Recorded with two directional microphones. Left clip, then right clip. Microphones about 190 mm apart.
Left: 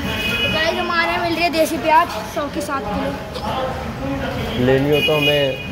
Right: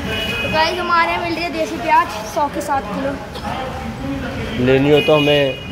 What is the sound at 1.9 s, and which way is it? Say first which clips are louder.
Speech: right 1 dB; 25° left (ahead or behind).